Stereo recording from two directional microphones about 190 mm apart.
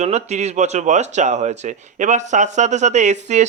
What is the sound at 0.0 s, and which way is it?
Speech, 35° right (ahead or behind).